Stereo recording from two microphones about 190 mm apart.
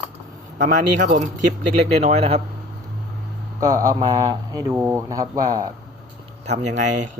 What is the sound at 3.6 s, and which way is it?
Speech, 15° right (ahead or behind).